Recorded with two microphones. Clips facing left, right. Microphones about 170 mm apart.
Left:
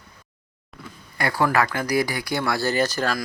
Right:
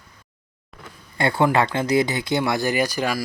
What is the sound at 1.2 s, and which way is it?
Speech, 25° right (ahead or behind).